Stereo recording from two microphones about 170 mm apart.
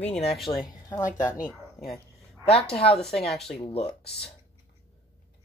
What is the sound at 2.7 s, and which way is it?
Speech, 35° left (ahead or behind).